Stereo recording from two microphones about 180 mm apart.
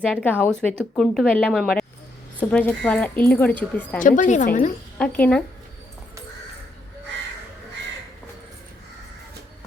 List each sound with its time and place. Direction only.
0.1 s a woman's voice: 10° left (ahead or behind)
4.0 s a woman's voice: 45° left (ahead or behind)
4.9 s speech: 10° left (ahead or behind)